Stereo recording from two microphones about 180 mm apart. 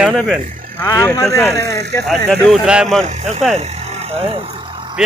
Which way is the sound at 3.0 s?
40° right (ahead or behind).